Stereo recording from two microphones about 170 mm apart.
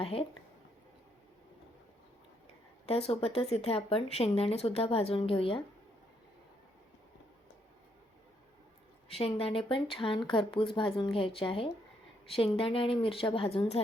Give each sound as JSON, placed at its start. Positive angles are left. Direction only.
{"t": 0.0, "sound": "speech", "side_deg": 35}
{"t": 2.8, "sound": "speech", "side_deg": 35}
{"t": 9.0, "sound": "speech", "side_deg": 35}